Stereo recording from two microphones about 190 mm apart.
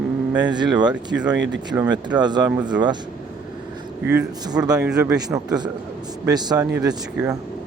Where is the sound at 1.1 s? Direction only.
5° right (ahead or behind); by 2.5 s 20° right (ahead or behind).